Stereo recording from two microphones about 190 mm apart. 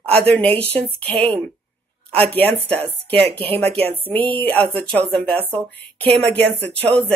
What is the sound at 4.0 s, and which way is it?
A woman's voice, 10° left (ahead or behind).